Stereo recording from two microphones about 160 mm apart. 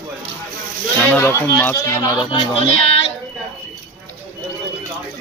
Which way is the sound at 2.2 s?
35° left (ahead or behind).